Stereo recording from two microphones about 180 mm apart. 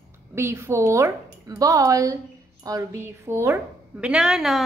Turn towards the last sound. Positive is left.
turn(degrees=0)  # may be behind; listen again after turning